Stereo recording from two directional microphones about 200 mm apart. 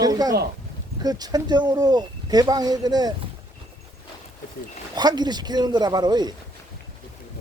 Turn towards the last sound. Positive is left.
turn(degrees=-20)  # may be behind; listen again after turning